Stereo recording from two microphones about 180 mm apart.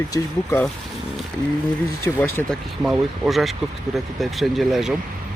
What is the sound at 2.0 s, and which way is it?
Speech, 10° left (ahead or behind).